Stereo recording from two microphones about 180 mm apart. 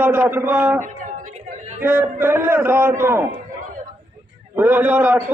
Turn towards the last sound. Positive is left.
turn(degrees=-10)  # may be behind; listen again after turning